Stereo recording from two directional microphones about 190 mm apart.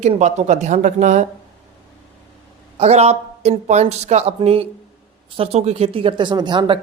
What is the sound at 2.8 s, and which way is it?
A woman's voice, 35° right (ahead or behind).